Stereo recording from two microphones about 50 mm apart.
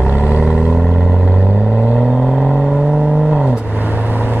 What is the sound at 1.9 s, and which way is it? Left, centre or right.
Vehicle, right.